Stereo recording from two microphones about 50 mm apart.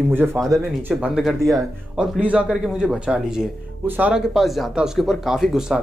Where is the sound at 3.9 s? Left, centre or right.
Right.